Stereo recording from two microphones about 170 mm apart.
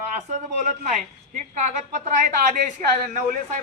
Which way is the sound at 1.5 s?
45° right (ahead or behind).